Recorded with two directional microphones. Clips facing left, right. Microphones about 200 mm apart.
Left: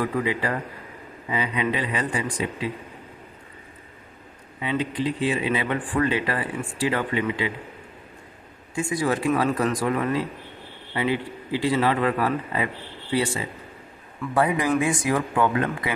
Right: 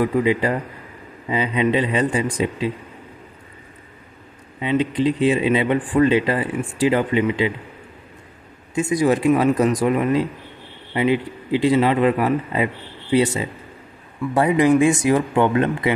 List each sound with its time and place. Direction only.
0.0 s speech: 20° right (ahead or behind)
4.6 s speech: 20° right (ahead or behind)
8.7 s a man's voice: 20° right (ahead or behind)